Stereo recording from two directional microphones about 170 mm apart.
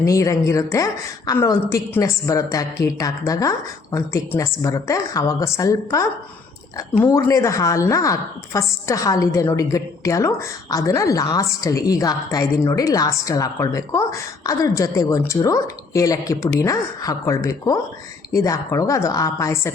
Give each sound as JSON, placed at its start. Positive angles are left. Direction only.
{"t": 0.0, "sound": "a woman's voice", "side_deg": 20}